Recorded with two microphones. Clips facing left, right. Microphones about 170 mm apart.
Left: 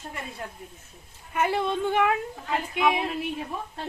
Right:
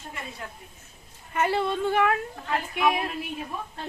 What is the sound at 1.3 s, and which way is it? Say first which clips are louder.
A woman's voice: even; 15° left (ahead or behind).